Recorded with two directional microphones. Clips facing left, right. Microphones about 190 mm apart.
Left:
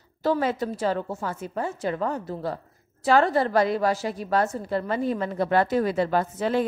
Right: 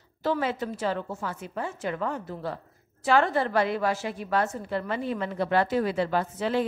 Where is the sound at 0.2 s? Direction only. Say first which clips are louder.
Left 3 dB; 40° left (ahead or behind).